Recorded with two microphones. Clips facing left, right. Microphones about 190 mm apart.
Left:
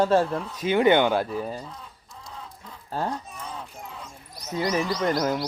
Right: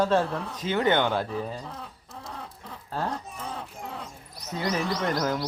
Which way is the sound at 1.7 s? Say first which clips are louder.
Right 3 dB; 65° right (ahead or behind).